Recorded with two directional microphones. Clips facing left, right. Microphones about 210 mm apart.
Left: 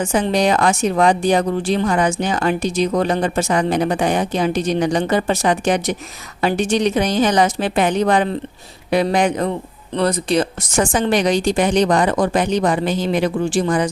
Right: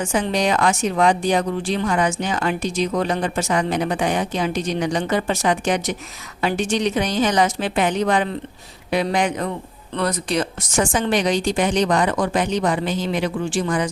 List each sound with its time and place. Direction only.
0.0 s speech: 35° left (ahead or behind)